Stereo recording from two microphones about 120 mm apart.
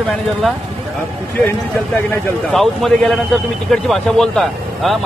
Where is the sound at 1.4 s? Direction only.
20° left (ahead or behind).